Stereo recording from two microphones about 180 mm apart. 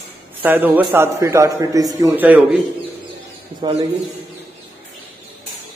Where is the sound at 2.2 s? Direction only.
10° right (ahead or behind).